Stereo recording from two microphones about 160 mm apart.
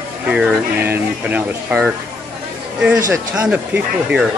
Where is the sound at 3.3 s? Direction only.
10° right (ahead or behind).